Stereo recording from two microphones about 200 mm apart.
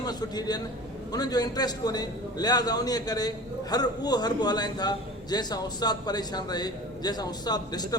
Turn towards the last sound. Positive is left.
turn(degrees=20)  # may be behind; listen again after turning